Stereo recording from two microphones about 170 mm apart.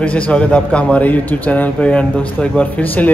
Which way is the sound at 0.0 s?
5° left (ahead or behind).